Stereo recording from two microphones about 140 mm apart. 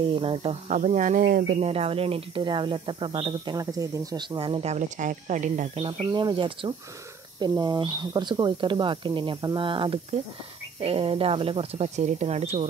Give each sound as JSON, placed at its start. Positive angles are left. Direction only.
{"t": 0.1, "sound": "speech", "side_deg": -40}
{"t": 0.7, "sound": "speech", "side_deg": -60}
{"t": 1.6, "sound": "speech", "side_deg": -45}
{"t": 3.5, "sound": "speech", "side_deg": -25}
{"t": 4.4, "sound": "speech", "side_deg": -40}
{"t": 6.1, "sound": "speech", "side_deg": -35}